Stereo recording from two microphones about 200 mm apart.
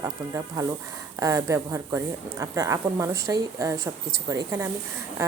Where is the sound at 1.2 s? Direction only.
15° right (ahead or behind).